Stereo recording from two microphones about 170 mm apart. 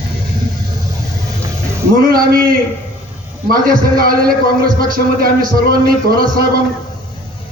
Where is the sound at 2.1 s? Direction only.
55° right (ahead or behind).